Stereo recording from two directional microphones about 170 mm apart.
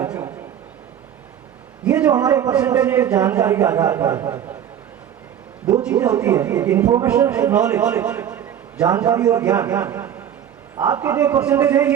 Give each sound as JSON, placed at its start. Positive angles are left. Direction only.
{"t": 0.0, "sound": "a sound", "side_deg": -15}
{"t": 1.8, "sound": "speech", "side_deg": -10}
{"t": 5.8, "sound": "speech", "side_deg": -10}